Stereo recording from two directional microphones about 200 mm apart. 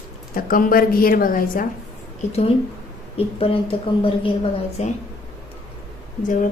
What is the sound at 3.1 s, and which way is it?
Speech, 25° left (ahead or behind).